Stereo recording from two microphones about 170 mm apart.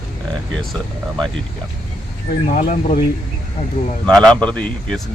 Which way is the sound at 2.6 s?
50° left (ahead or behind).